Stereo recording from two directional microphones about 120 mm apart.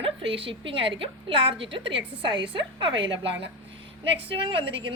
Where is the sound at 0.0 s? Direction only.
50° right (ahead or behind).